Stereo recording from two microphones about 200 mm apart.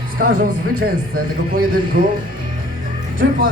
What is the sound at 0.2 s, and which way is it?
A man's voice, 45° right (ahead or behind).